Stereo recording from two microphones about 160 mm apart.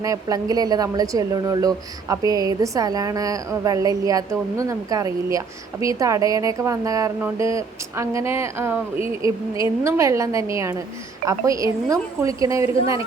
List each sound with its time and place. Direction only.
0.0 s a woman's voice: 20° right (ahead or behind)